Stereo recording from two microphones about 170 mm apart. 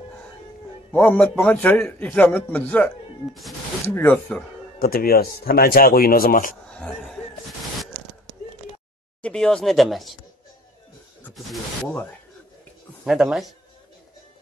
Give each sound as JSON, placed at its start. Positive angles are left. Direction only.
{"t": 0.9, "sound": "a man's voice", "side_deg": 10}
{"t": 4.7, "sound": "speech", "side_deg": 60}
{"t": 6.7, "sound": "speech", "side_deg": 5}
{"t": 9.2, "sound": "speech", "side_deg": 5}
{"t": 13.0, "sound": "speech", "side_deg": 0}